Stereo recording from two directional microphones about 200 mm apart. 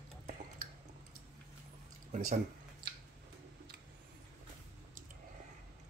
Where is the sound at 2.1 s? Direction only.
45° right (ahead or behind).